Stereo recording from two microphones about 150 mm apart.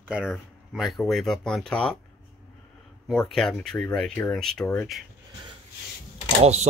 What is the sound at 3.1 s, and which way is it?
Speech, 5° left (ahead or behind).